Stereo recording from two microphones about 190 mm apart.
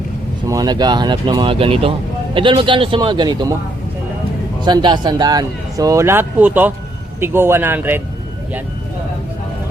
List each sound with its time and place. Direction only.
0.4 s speech: 20° right (ahead or behind)
4.6 s speech: 25° right (ahead or behind)